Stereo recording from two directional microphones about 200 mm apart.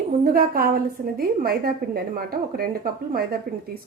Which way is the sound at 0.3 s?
45° right (ahead or behind).